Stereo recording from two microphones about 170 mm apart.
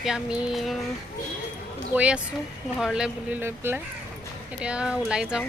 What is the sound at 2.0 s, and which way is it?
Speech, 5° right (ahead or behind).